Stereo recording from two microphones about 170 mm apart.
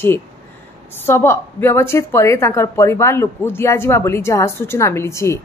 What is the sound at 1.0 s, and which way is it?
A woman's voice, 15° left (ahead or behind).